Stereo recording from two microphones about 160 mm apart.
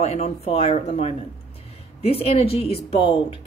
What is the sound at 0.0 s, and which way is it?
A woman's voice, 40° left (ahead or behind).